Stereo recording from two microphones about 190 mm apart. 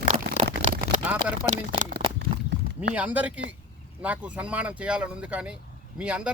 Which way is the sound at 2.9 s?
5° right (ahead or behind).